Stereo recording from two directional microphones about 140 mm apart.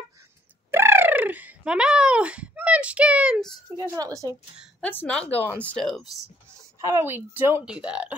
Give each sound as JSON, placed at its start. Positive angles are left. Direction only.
{"t": 0.7, "sound": "speech", "side_deg": -15}
{"t": 3.9, "sound": "speech", "side_deg": -25}
{"t": 4.8, "sound": "speech", "side_deg": 10}
{"t": 6.8, "sound": "speech", "side_deg": -20}